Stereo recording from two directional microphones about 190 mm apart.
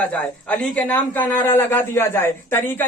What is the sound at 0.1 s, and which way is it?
A man's voice, 5° left (ahead or behind).